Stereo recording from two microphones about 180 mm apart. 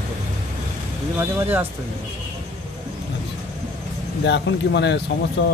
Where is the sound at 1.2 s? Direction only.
10° right (ahead or behind).